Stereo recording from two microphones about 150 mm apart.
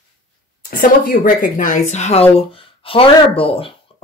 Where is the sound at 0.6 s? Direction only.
70° left (ahead or behind); by 2.2 s 50° left (ahead or behind).